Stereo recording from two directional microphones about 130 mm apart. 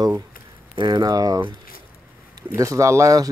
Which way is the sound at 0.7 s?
30° right (ahead or behind).